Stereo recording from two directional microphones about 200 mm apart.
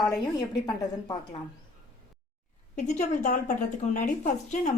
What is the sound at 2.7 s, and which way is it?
A woman's voice, 35° left (ahead or behind).